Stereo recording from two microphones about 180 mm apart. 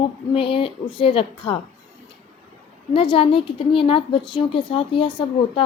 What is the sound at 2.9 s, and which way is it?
A woman's voice, 30° left (ahead or behind).